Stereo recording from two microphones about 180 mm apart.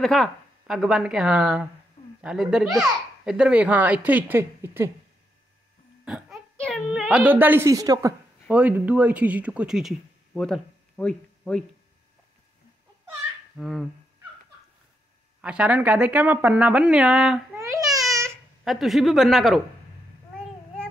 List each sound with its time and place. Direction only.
0.0 s a woman's voice: centre (ahead or behind); by 4.9 s 15° right (ahead or behind)
6.0 s a sound: 5° right (ahead or behind)
6.6 s a child's voice: centre (ahead or behind); by 8.1 s 20° right (ahead or behind)
8.5 s speech: 10° right (ahead or behind)
13.6 s a woman's voice: centre (ahead or behind)
15.4 s a child's voice: 5° right (ahead or behind)
17.6 s babbling: 20° right (ahead or behind)
18.3 s speech: centre (ahead or behind)